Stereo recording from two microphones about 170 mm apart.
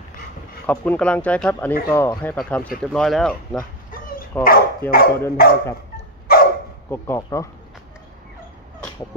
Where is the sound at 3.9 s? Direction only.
55° left (ahead or behind).